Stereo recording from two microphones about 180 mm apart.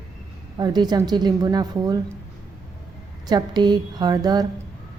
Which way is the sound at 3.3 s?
20° right (ahead or behind).